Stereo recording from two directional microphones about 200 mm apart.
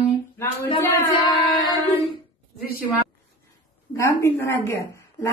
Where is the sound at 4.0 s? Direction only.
15° left (ahead or behind).